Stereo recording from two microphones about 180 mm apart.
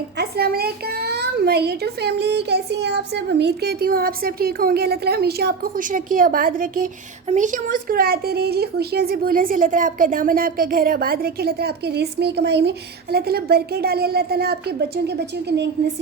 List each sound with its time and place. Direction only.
0.2 s speech: 60° right (ahead or behind)